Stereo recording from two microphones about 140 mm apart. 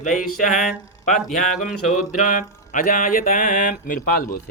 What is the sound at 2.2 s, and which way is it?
Speech, 75° left (ahead or behind).